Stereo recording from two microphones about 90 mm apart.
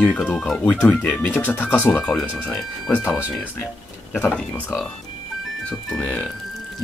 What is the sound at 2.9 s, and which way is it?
Speech, 25° left (ahead or behind).